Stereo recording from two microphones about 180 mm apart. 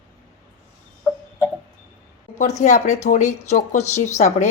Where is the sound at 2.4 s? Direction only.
40° left (ahead or behind).